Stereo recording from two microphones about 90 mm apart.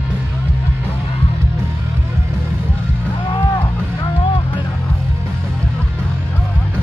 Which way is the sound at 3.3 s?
70° left (ahead or behind).